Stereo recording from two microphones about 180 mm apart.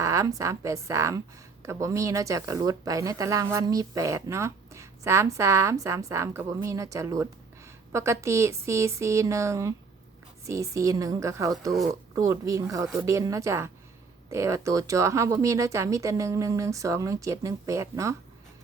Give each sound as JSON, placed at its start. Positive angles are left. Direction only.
{"t": 0.0, "sound": "speech", "side_deg": -15}